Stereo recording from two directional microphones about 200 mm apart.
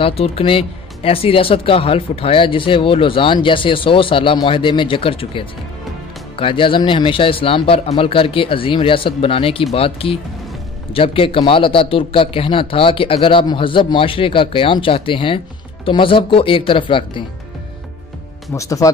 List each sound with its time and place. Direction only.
0.0 s a man's voice: 25° left (ahead or behind)
18.5 s speech: 15° left (ahead or behind)